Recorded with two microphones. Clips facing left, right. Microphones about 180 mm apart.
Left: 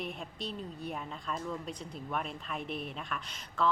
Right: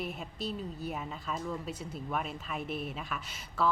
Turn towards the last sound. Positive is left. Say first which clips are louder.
# right 1 dB
turn(degrees=-5)  # may be behind; listen again after turning